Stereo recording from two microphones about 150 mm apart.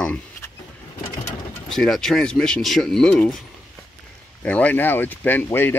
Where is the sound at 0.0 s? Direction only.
10° left (ahead or behind).